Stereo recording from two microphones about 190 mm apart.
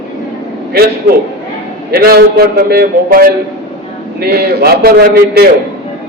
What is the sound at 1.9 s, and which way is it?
A man's voice, 55° right (ahead or behind).